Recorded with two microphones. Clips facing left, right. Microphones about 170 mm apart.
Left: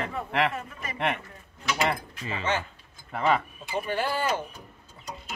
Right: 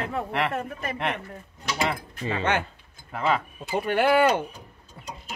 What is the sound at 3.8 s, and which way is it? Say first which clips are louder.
Speech: right 9 dB; 65° right (ahead or behind).